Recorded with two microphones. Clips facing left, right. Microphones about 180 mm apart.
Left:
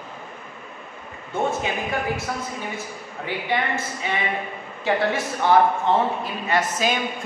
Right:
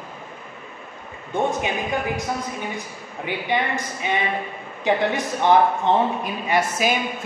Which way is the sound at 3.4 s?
15° right (ahead or behind).